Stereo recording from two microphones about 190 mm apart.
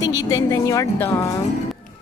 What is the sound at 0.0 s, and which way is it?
A woman's voice, 20° left (ahead or behind).